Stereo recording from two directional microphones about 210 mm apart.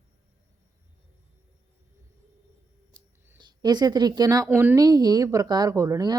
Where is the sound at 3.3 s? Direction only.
20° right (ahead or behind).